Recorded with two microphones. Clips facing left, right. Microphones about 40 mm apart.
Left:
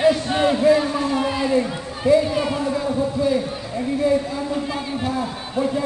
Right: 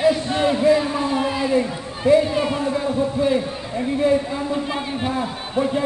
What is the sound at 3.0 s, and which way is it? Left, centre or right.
Speech, right.